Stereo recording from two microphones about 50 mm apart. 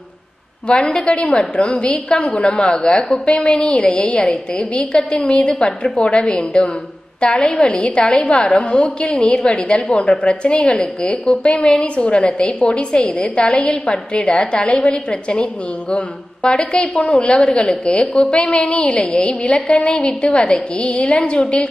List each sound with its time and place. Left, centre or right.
0.7 s a woman's voice: centre
11.5 s a woman's voice: centre
11.8 s a woman's voice: left
16.4 s a woman's voice: centre